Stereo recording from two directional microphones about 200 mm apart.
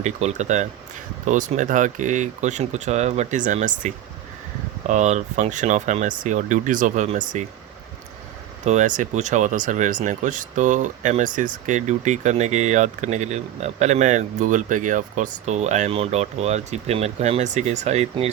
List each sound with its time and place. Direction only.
0.0 s speech: 35° right (ahead or behind)
8.6 s speech: 35° right (ahead or behind)